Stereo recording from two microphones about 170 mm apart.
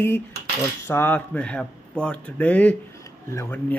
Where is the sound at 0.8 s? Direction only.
10° left (ahead or behind).